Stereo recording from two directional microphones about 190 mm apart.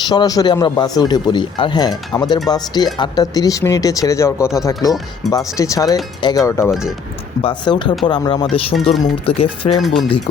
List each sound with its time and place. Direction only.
0.1 s speech: 20° left (ahead or behind)
6.7 s speech: 5° right (ahead or behind)
7.4 s speech: 25° left (ahead or behind)
9.8 s speech: centre (ahead or behind)